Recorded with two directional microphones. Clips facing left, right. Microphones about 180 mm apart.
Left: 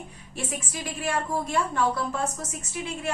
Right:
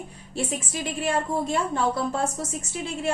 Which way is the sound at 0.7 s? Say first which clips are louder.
Right 2 dB; 25° right (ahead or behind).